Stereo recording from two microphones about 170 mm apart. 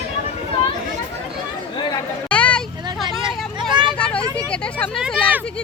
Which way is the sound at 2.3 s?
5° left (ahead or behind).